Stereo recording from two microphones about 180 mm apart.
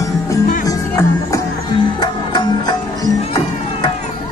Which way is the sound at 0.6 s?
20° left (ahead or behind).